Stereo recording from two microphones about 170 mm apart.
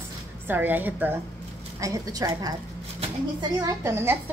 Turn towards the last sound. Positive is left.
turn(degrees=-15)  # may be behind; listen again after turning